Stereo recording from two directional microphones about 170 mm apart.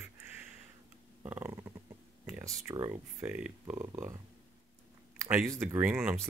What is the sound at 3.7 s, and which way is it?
Speech, 20° right (ahead or behind).